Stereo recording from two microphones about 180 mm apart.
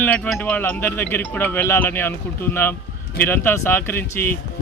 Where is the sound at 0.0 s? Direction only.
5° left (ahead or behind).